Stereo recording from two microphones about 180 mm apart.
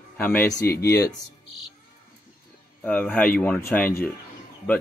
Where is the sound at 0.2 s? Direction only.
10° left (ahead or behind).